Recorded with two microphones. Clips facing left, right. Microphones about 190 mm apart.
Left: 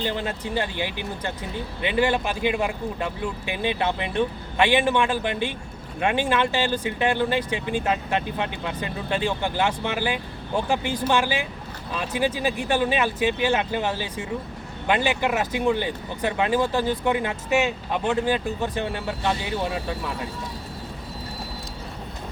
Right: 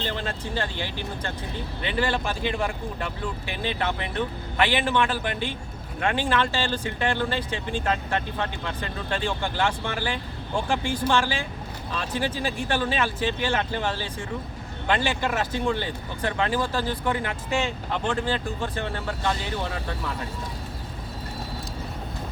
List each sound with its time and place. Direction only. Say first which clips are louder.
0.0 s speech: left 3 dB; 15° left (ahead or behind)
17.6 s speech: left 3 dB; 10° left (ahead or behind)